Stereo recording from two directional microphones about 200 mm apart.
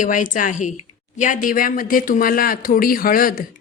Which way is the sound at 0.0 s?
40° left (ahead or behind).